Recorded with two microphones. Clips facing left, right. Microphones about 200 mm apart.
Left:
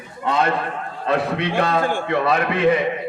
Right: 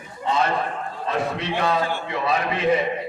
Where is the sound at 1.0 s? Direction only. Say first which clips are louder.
Left 5 dB; 60° left (ahead or behind).